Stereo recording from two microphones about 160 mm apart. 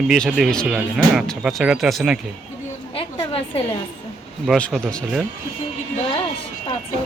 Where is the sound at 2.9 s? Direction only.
35° left (ahead or behind).